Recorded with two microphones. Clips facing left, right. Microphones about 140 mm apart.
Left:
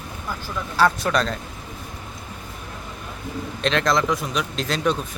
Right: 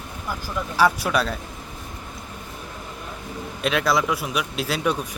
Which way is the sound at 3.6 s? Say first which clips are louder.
Left 1 dB; 10° right (ahead or behind).